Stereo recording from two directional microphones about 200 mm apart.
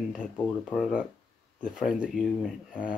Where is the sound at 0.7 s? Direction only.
Centre (ahead or behind).